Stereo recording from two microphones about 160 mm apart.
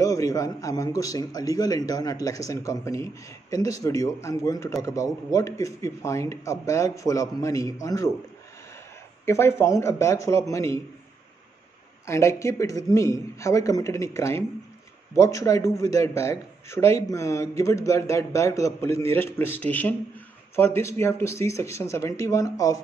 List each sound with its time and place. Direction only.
0.0 s a man's voice: 20° left (ahead or behind)
9.2 s speech: 15° left (ahead or behind)
12.1 s a man's voice: 20° left (ahead or behind)